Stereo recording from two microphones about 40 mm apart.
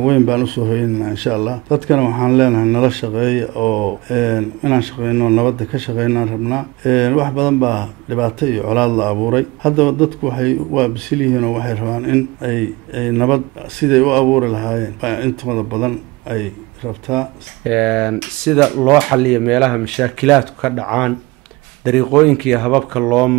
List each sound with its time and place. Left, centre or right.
0.0 s speech: centre